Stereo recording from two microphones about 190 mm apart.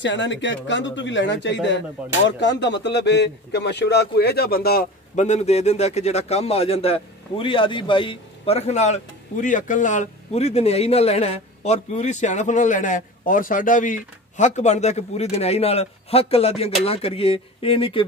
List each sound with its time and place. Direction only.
0.0 s a man's voice: 70° left (ahead or behind); by 4.8 s 55° left (ahead or behind)
5.1 s a man's voice: 35° left (ahead or behind)